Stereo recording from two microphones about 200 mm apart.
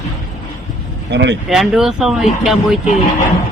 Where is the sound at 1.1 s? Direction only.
60° right (ahead or behind).